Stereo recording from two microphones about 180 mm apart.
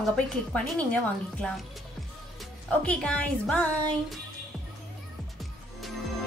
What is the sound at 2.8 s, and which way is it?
Speech, 5° left (ahead or behind).